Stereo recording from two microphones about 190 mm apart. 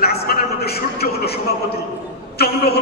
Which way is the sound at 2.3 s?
55° left (ahead or behind).